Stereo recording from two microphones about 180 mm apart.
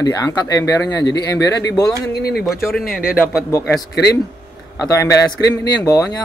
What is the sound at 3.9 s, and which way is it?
Speech, 65° left (ahead or behind).